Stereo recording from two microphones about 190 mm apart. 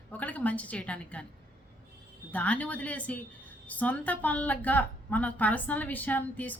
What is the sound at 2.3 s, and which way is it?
A woman's voice, 10° left (ahead or behind).